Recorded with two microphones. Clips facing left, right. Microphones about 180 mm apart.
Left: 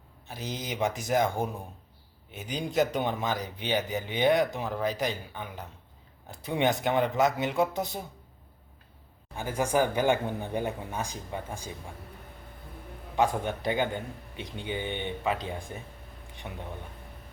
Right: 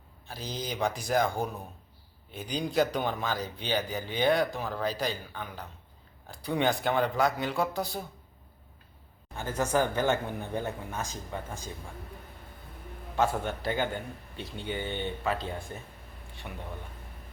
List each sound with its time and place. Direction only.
0.3 s speech: 20° left (ahead or behind)
9.3 s a man's voice: 10° left (ahead or behind)
13.1 s a man's voice: 15° left (ahead or behind)